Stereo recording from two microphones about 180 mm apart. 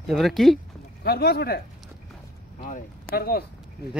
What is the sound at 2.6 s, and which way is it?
Speech, 45° left (ahead or behind).